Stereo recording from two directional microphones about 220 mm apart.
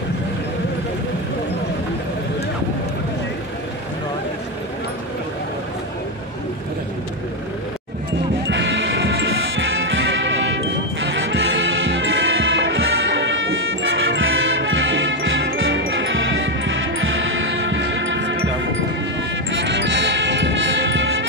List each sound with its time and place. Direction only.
8.5 s music: 55° right (ahead or behind)